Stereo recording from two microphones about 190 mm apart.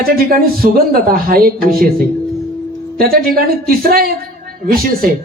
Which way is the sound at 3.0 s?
50° right (ahead or behind).